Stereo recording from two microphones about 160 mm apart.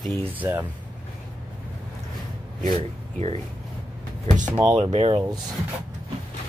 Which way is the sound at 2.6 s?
45° right (ahead or behind).